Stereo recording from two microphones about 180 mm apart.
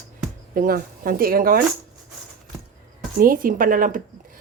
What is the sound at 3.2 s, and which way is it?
Speech, 50° right (ahead or behind).